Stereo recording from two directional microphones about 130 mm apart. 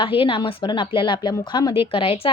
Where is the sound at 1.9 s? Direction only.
45° left (ahead or behind).